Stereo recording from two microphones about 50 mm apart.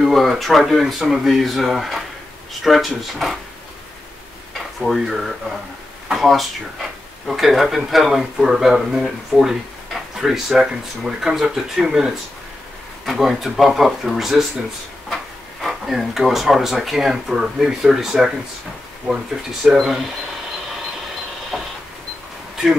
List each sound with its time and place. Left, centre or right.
0.0 s speech: centre
4.7 s speech: centre
10.2 s speech: centre
15.6 s speech: centre
19.1 s speech: right
19.6 s speech: centre
21.5 s printer: centre